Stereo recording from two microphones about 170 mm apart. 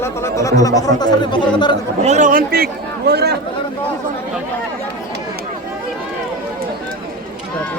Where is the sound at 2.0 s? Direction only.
45° right (ahead or behind).